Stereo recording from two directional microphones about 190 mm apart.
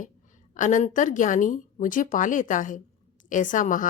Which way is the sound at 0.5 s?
40° left (ahead or behind).